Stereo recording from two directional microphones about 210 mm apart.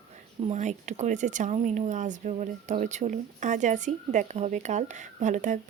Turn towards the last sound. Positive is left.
turn(degrees=-35)  # may be behind; listen again after turning